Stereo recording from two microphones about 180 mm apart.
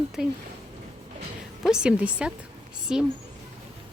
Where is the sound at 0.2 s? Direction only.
5° right (ahead or behind).